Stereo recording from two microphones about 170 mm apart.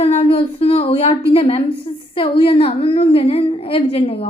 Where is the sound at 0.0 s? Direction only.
35° left (ahead or behind).